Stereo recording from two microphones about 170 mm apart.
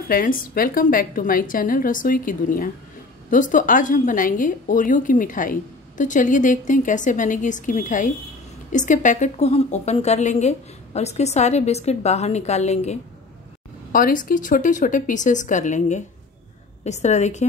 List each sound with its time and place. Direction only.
0.1 s a woman's voice: 55° left (ahead or behind)
13.9 s a woman's voice: 55° left (ahead or behind)